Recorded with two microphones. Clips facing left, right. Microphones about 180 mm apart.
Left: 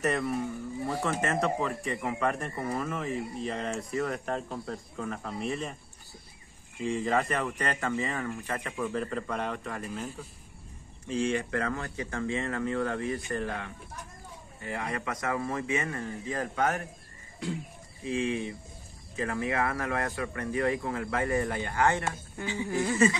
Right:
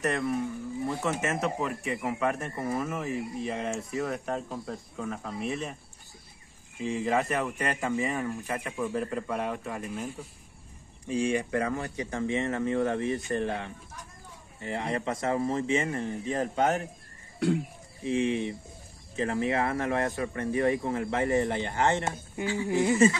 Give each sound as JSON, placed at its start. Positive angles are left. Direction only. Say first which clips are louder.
{"t": 0.0, "sound": "speech", "louder": "right 1 dB", "side_deg": 0}
{"t": 6.8, "sound": "speech", "louder": "even", "side_deg": -5}
{"t": 11.1, "sound": "speech", "louder": "right 1 dB", "side_deg": -15}
{"t": 18.0, "sound": "speech", "louder": "right 3 dB", "side_deg": -20}